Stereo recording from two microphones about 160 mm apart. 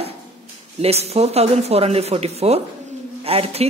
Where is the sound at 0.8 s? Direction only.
40° right (ahead or behind).